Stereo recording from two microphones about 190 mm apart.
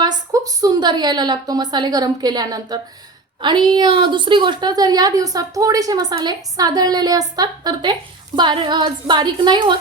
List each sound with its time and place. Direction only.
0.0 s a woman's voice: 20° right (ahead or behind)